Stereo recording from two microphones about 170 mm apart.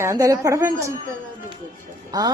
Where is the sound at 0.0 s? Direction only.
15° right (ahead or behind).